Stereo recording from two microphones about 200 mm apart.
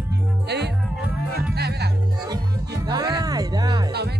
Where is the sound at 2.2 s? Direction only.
20° right (ahead or behind).